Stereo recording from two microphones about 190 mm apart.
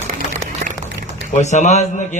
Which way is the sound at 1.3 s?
40° left (ahead or behind).